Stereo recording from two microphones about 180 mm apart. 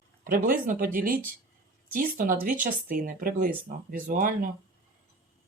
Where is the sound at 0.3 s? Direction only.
50° right (ahead or behind).